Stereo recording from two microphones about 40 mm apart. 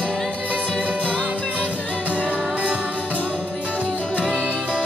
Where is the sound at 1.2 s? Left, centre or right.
Right.